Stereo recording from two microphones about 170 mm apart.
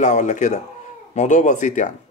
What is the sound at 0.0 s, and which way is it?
Speech, 45° left (ahead or behind).